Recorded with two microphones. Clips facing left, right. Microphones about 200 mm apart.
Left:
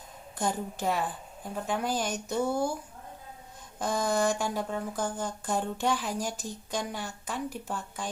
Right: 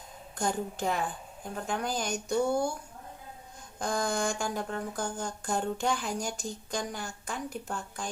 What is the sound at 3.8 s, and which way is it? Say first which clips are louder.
Speech: left 3 dB; 5° left (ahead or behind).